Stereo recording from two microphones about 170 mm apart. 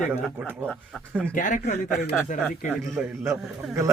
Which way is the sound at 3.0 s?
5° right (ahead or behind).